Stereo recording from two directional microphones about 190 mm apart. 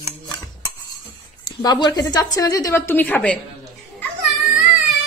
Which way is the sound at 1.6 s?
20° left (ahead or behind).